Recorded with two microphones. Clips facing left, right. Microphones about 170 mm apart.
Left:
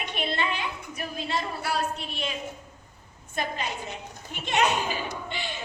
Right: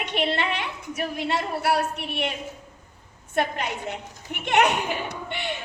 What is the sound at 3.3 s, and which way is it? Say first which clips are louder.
A woman's voice: right 5 dB; 65° right (ahead or behind).